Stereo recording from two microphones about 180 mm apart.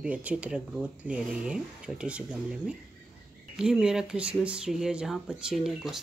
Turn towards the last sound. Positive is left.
turn(degrees=0)  # may be behind; listen again after turning